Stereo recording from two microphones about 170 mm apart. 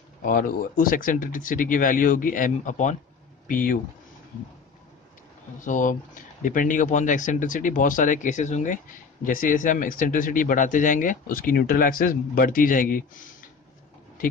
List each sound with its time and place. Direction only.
0.2 s speech: 55° left (ahead or behind)
5.6 s speech: 50° left (ahead or behind)